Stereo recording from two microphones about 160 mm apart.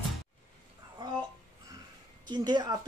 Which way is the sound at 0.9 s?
25° right (ahead or behind).